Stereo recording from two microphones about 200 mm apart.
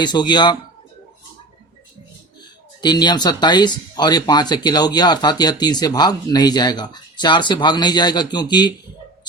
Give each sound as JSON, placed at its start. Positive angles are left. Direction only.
{"t": 0.0, "sound": "speech", "side_deg": 20}
{"t": 2.4, "sound": "speech", "side_deg": 20}